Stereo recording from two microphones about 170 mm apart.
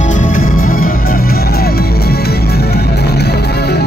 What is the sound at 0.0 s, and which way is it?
Music, 50° left (ahead or behind).